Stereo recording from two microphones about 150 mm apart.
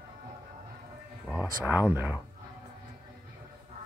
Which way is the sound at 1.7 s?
15° right (ahead or behind).